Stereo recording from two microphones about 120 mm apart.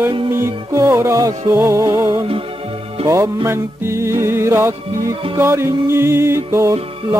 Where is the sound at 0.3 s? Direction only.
25° right (ahead or behind).